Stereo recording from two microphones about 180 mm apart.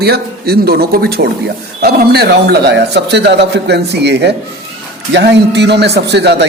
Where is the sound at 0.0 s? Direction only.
60° right (ahead or behind).